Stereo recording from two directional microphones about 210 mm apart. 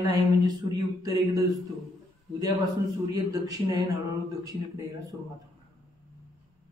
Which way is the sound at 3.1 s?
15° right (ahead or behind).